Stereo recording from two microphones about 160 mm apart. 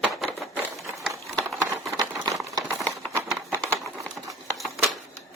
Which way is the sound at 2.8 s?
5° left (ahead or behind).